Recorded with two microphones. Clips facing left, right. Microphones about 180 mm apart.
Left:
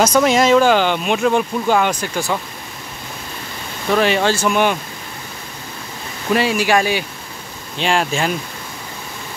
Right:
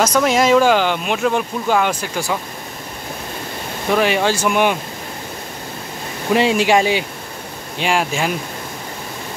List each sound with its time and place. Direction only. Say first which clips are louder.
0.2 s speech: right 1 dB; 5° right (ahead or behind)
3.9 s speech: left 1 dB; 10° right (ahead or behind)
6.3 s speech: right 2 dB; 25° right (ahead or behind)
7.8 s speech: left 1 dB; 10° right (ahead or behind)